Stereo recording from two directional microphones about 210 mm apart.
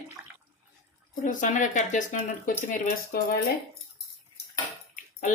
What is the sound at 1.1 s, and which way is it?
Speech, 40° left (ahead or behind).